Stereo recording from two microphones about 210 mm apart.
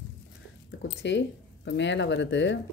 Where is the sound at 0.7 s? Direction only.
55° left (ahead or behind).